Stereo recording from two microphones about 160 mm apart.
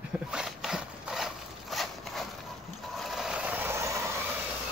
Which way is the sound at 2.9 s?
Centre (ahead or behind).